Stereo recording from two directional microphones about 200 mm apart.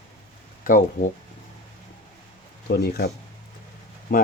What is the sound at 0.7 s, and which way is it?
Speech, 40° left (ahead or behind).